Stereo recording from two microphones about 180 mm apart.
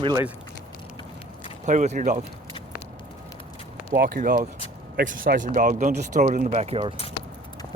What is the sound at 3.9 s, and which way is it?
Speech, 55° right (ahead or behind).